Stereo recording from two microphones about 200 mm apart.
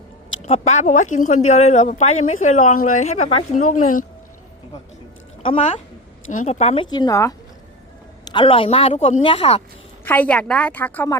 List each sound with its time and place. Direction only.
0.4 s speech: 35° left (ahead or behind)
5.4 s a woman's voice: 30° left (ahead or behind)
6.9 s a woman's voice: 20° left (ahead or behind)
10.0 s a woman's voice: 10° left (ahead or behind)